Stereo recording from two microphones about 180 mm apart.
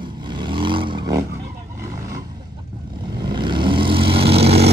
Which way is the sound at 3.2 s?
25° right (ahead or behind).